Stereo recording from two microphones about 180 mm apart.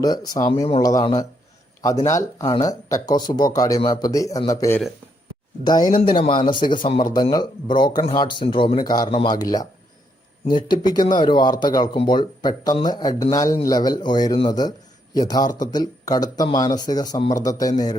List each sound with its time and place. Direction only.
0.0 s speech: 20° left (ahead or behind)
10.7 s speech: 25° left (ahead or behind)